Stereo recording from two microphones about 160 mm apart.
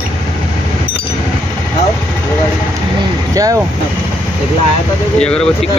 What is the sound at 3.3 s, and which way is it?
Speech, 20° right (ahead or behind).